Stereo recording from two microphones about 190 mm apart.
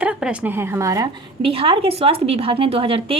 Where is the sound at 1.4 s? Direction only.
30° right (ahead or behind).